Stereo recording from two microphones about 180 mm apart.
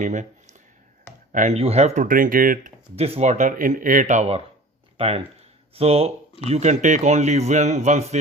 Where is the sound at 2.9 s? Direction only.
35° right (ahead or behind).